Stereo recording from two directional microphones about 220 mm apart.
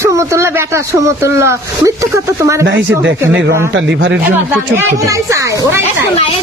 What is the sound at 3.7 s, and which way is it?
Speech, 60° right (ahead or behind).